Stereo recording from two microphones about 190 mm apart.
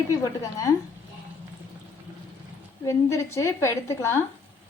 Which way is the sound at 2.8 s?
15° left (ahead or behind).